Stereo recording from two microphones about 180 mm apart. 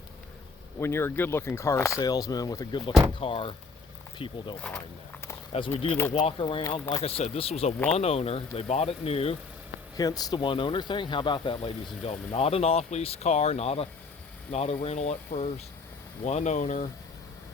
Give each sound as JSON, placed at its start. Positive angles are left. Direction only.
{"t": 0.8, "sound": "speech", "side_deg": 15}
{"t": 4.7, "sound": "speech", "side_deg": 5}
{"t": 5.5, "sound": "speech", "side_deg": 30}
{"t": 10.0, "sound": "speech", "side_deg": 20}